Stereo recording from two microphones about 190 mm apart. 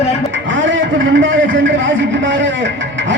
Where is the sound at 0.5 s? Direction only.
80° right.